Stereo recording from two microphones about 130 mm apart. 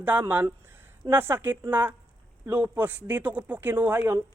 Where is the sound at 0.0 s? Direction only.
15° right (ahead or behind).